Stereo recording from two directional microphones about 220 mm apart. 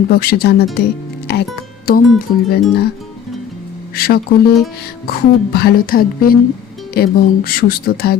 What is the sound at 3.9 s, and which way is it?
Speech, 45° left (ahead or behind).